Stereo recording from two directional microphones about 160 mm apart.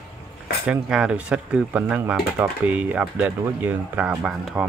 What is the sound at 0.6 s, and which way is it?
Speech, 5° right (ahead or behind).